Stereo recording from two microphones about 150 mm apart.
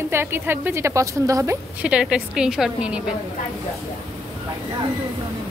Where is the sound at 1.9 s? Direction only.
5° right (ahead or behind).